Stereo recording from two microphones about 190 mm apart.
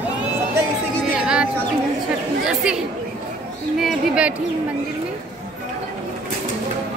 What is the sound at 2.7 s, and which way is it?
Speech, 5° right (ahead or behind).